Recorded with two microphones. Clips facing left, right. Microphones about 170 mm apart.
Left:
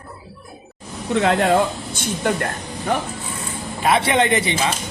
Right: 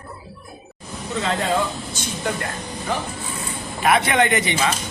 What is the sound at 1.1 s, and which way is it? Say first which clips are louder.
Speech: left 6 dB; 60° left (ahead or behind).